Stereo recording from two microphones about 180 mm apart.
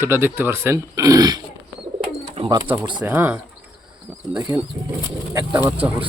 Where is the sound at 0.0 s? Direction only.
15° right (ahead or behind).